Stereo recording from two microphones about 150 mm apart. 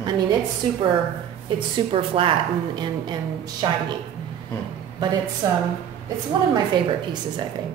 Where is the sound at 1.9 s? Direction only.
35° right (ahead or behind).